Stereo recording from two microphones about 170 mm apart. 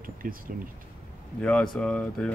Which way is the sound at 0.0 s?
55° right (ahead or behind).